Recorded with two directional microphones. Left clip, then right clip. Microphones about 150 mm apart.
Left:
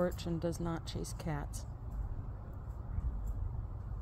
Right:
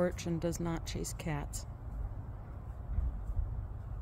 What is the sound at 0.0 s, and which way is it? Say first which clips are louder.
Speech: right 2 dB; 30° right (ahead or behind).